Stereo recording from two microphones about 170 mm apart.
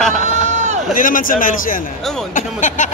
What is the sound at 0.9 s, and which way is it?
Speech, 55° left (ahead or behind).